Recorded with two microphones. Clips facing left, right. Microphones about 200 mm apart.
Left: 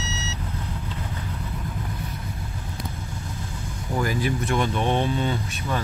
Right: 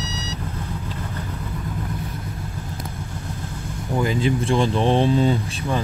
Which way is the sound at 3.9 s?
25° right (ahead or behind).